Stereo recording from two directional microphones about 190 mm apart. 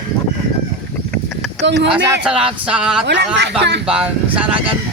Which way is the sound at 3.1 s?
65° right (ahead or behind).